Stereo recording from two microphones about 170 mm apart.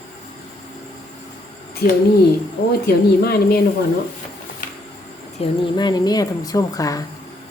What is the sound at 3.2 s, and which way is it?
Speech, 65° left (ahead or behind).